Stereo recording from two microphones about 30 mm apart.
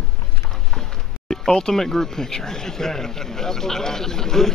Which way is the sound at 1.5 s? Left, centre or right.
Centre.